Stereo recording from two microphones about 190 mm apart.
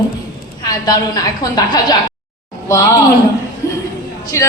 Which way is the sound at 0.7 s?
20° left (ahead or behind).